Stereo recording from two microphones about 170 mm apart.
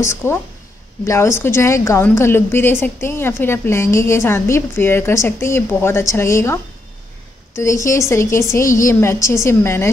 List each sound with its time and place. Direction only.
0.0 s a woman's voice: 15° left (ahead or behind)